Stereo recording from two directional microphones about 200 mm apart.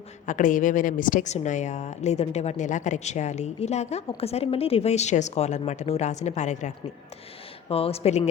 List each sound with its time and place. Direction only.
0.3 s a woman's voice: 40° left (ahead or behind)